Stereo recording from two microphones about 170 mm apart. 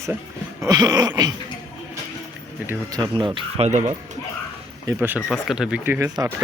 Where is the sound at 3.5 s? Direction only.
35° right (ahead or behind).